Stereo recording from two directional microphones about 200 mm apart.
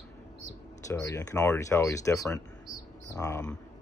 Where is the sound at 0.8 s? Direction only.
15° left (ahead or behind).